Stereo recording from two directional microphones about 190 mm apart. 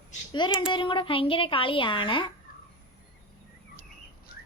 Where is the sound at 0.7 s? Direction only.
25° left (ahead or behind).